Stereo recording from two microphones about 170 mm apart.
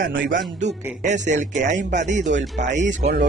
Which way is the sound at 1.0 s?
45° right (ahead or behind).